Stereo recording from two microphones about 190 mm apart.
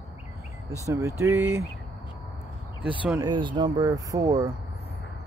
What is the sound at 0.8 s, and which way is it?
Speech, 15° right (ahead or behind).